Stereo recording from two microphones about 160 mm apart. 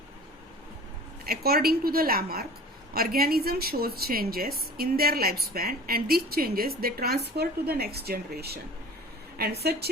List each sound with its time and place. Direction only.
1.2 s a woman's voice: 70° right (ahead or behind); by 9.9 s 85° right